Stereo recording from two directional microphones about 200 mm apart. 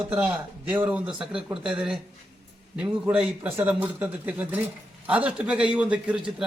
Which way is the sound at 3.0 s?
5° right (ahead or behind).